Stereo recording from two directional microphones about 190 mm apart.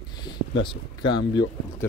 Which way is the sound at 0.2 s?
25° left (ahead or behind).